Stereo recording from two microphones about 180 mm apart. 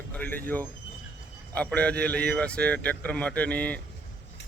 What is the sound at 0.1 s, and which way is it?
A man's voice, 10° left (ahead or behind).